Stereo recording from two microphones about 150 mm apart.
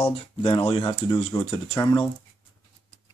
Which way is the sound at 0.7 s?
35° left (ahead or behind).